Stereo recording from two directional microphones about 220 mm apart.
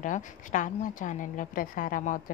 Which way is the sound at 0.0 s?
35° left (ahead or behind).